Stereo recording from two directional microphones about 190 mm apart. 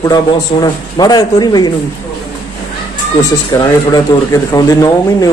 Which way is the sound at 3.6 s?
20° left (ahead or behind).